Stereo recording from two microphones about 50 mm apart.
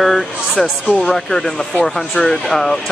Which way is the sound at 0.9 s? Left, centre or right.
Centre.